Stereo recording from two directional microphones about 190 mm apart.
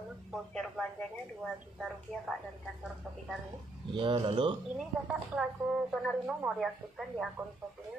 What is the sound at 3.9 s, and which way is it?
Speech, 25° right (ahead or behind).